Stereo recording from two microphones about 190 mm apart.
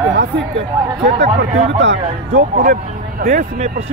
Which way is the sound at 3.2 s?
50° right (ahead or behind).